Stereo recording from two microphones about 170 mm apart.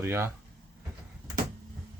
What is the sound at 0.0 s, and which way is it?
Speech, 15° right (ahead or behind).